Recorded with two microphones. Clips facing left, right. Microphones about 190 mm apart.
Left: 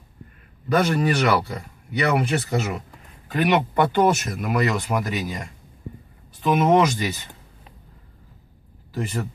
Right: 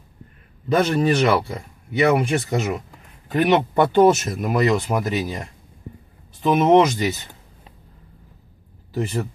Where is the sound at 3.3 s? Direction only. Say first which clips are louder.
Right 3 dB; 25° right (ahead or behind).